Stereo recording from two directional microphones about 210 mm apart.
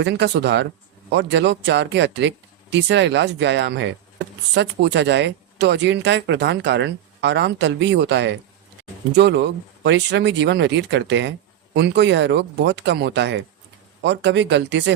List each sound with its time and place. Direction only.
0.0 s speech: 55° right (ahead or behind)